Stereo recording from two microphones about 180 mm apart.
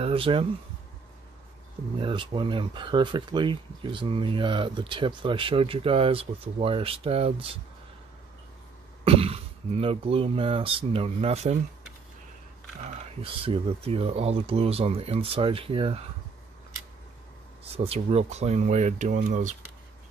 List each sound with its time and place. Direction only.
0.0 s speech: 30° right (ahead or behind)
2.0 s speech: 30° right (ahead or behind)
9.0 s speech: 30° right (ahead or behind)
13.2 s speech: 30° right (ahead or behind)
17.7 s speech: 35° right (ahead or behind)